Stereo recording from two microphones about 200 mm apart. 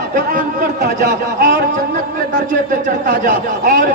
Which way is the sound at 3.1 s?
45° right (ahead or behind).